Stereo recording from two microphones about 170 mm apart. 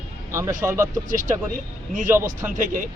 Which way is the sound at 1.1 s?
50° right (ahead or behind).